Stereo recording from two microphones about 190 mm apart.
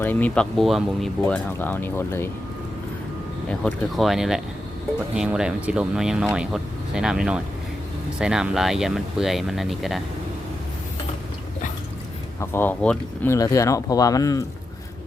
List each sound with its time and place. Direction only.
0.0 s speech: 10° left (ahead or behind)
3.5 s speech: 5° left (ahead or behind)
12.4 s speech: 10° left (ahead or behind)